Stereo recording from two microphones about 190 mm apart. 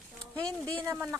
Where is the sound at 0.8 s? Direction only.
15° right (ahead or behind).